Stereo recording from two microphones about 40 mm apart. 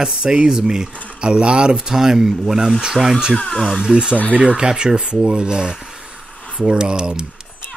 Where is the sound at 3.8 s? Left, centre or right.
Right.